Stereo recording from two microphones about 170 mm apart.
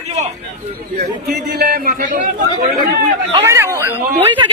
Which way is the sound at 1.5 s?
65° right (ahead or behind).